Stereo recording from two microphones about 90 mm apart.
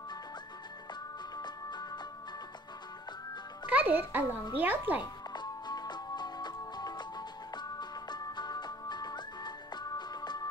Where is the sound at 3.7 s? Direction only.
15° right (ahead or behind).